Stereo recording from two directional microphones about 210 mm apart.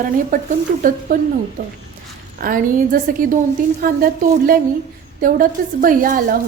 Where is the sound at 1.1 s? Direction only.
40° right (ahead or behind).